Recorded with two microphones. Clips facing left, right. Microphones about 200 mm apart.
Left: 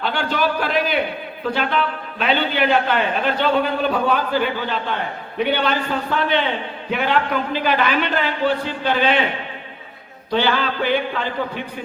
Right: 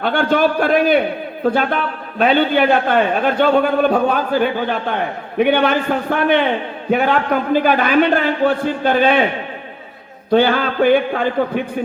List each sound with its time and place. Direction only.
0.0 s a man's voice: 50° right (ahead or behind)
10.3 s a man's voice: 50° right (ahead or behind)